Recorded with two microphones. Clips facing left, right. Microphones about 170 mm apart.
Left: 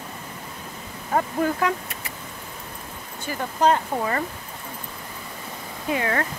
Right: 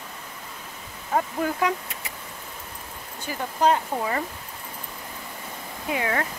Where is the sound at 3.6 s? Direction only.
10° right (ahead or behind).